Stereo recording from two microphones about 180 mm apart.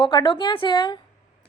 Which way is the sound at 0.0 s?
25° left (ahead or behind).